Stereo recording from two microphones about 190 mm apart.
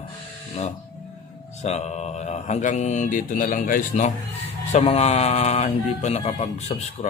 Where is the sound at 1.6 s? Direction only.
35° left (ahead or behind).